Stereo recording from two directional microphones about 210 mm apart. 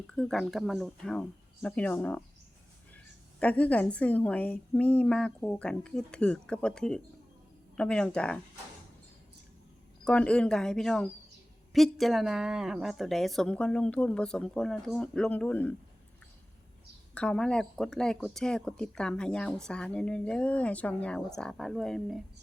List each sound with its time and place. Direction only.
0.1 s speech: 5° left (ahead or behind)
3.4 s speech: 5° left (ahead or behind)
10.0 s speech: 5° left (ahead or behind)
17.2 s speech: 5° left (ahead or behind)